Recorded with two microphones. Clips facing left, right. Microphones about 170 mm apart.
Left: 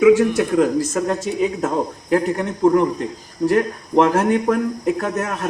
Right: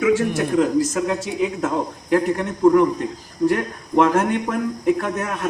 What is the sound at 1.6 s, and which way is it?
Speech, 35° left (ahead or behind).